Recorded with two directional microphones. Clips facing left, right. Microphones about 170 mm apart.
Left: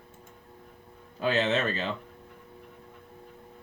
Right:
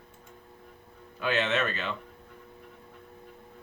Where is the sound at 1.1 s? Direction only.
35° left (ahead or behind).